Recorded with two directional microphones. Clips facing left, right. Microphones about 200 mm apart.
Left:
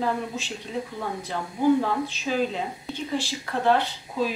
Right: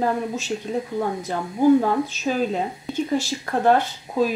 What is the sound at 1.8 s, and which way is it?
Speech, 45° right (ahead or behind).